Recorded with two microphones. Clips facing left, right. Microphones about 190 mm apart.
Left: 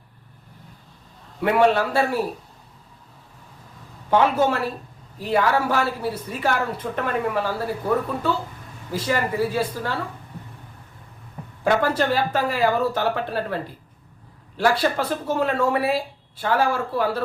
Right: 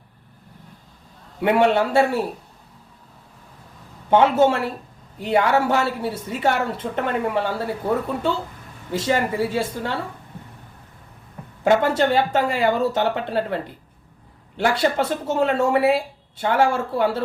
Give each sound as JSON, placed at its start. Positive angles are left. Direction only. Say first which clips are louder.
{"t": 1.5, "sound": "speech", "louder": "right 1 dB", "side_deg": -25}
{"t": 4.1, "sound": "speech", "louder": "right 3 dB", "side_deg": -25}
{"t": 8.9, "sound": "speech", "louder": "right 2 dB", "side_deg": -25}
{"t": 11.6, "sound": "speech", "louder": "right 3 dB", "side_deg": -25}